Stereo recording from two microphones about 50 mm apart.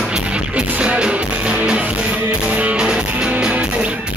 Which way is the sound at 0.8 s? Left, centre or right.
Centre.